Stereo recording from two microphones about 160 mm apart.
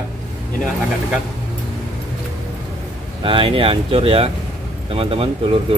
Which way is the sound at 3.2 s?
35° right (ahead or behind).